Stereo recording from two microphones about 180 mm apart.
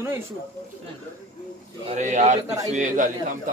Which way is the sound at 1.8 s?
40° right (ahead or behind).